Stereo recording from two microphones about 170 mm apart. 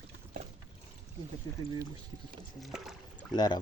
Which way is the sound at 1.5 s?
20° left (ahead or behind).